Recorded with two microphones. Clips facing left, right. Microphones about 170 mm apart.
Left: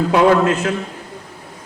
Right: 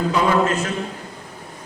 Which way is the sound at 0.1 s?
65° left (ahead or behind).